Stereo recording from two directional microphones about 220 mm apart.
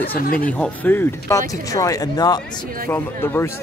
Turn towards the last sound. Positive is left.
turn(degrees=10)  # may be behind; listen again after turning